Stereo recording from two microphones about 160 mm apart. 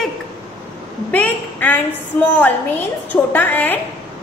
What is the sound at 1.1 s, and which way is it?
A woman's voice, 10° left (ahead or behind).